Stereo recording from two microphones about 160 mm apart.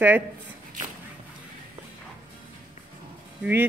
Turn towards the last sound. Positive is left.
turn(degrees=-10)  # may be behind; listen again after turning